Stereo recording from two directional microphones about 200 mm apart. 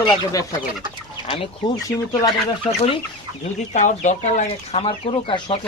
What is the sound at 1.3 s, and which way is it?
Speech, 25° left (ahead or behind).